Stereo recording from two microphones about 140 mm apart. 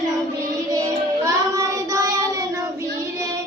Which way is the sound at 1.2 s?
25° right (ahead or behind).